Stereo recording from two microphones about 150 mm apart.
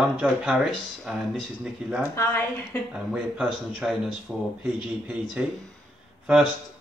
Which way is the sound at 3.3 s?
Centre (ahead or behind).